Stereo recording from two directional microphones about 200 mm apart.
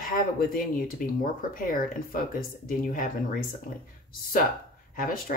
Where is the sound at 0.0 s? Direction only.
45° left (ahead or behind).